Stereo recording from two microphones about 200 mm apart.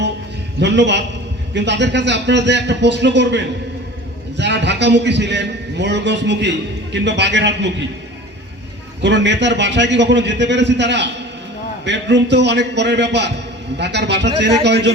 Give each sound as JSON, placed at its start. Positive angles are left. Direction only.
{"t": 0.6, "sound": "a man's voice", "side_deg": -60}
{"t": 9.0, "sound": "a man's voice", "side_deg": -60}